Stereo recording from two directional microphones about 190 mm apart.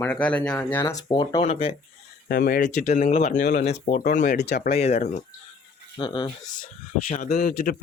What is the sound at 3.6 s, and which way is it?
Speech, 35° left (ahead or behind).